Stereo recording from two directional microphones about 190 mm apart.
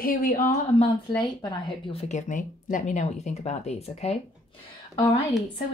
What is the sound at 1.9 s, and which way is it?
Speech, 40° left (ahead or behind).